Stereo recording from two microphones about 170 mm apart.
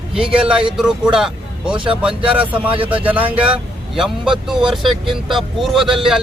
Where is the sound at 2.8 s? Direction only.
30° right (ahead or behind).